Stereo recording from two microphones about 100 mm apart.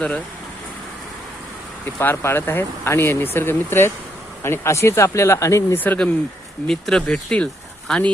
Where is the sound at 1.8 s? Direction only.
20° left (ahead or behind).